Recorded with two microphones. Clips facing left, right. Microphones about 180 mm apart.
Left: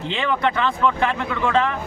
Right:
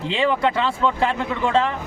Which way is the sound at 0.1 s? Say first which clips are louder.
Right 2 dB; 30° right (ahead or behind).